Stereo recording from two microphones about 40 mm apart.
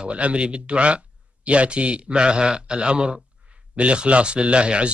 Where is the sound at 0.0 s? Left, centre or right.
Right.